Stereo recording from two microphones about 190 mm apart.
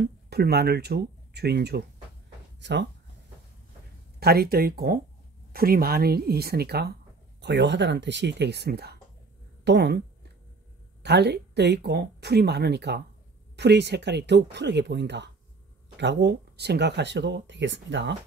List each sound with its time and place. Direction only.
0.0 s speech: 55° right (ahead or behind)
4.2 s speech: 55° right (ahead or behind)
7.4 s speech: 70° right (ahead or behind)
9.7 s a sound: 60° right (ahead or behind)
11.0 s speech: 60° right (ahead or behind)